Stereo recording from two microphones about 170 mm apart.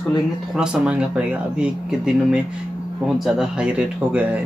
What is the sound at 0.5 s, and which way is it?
Speech, 5° right (ahead or behind).